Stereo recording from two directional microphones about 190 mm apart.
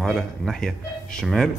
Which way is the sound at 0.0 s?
Centre (ahead or behind).